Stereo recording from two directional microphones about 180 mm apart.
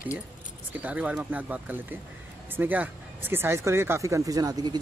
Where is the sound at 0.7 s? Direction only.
10° right (ahead or behind).